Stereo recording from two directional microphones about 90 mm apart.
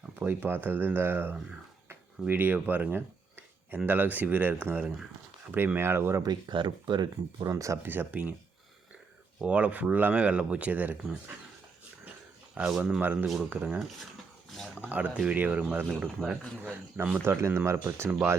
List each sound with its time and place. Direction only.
0.2 s speech: 20° right (ahead or behind)
5.5 s speech: 25° right (ahead or behind)
6.2 s speech: 55° right (ahead or behind)
7.4 s speech: 35° right (ahead or behind)
7.8 s speech: 20° right (ahead or behind)
9.4 s speech: 15° right (ahead or behind)
12.6 s speech: 20° right (ahead or behind)
13.2 s speech: 5° right (ahead or behind)
13.5 s speech: 20° right (ahead or behind)
14.8 s speech: 15° right (ahead or behind)
16.6 s speech: 20° right (ahead or behind)